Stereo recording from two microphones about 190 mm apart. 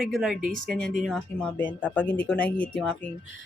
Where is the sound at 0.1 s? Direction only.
Centre (ahead or behind).